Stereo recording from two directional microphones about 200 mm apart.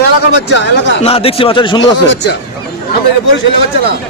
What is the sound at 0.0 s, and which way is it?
Speech, 60° left (ahead or behind).